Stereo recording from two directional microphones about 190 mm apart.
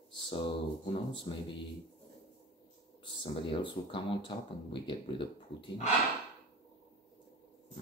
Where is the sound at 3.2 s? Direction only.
25° left (ahead or behind).